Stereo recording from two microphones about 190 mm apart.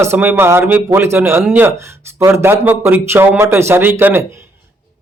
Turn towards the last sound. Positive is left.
turn(degrees=-10)  # may be behind; listen again after turning